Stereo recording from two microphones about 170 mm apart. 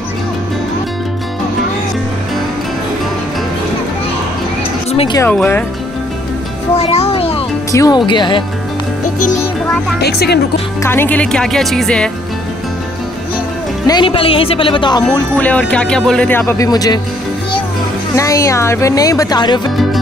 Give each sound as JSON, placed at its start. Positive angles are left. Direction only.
{"t": 4.9, "sound": "speech", "side_deg": 30}
{"t": 5.2, "sound": "speech", "side_deg": 10}
{"t": 6.7, "sound": "music", "side_deg": 35}
{"t": 7.7, "sound": "speech", "side_deg": 20}
{"t": 9.9, "sound": "speech", "side_deg": 70}
{"t": 10.8, "sound": "speech", "side_deg": 15}
{"t": 13.8, "sound": "speech", "side_deg": 30}
{"t": 15.3, "sound": "speech", "side_deg": 10}
{"t": 18.1, "sound": "speech", "side_deg": 20}